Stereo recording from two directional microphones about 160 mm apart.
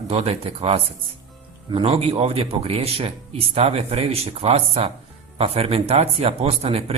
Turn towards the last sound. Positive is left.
turn(degrees=-35)  # may be behind; listen again after turning